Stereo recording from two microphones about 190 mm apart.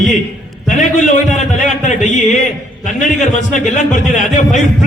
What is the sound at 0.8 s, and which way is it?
A man's voice, 40° left (ahead or behind).